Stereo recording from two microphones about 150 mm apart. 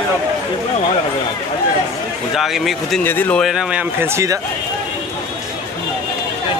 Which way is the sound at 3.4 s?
5° right (ahead or behind).